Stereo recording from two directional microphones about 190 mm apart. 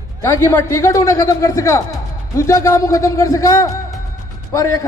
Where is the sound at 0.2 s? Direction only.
15° left (ahead or behind).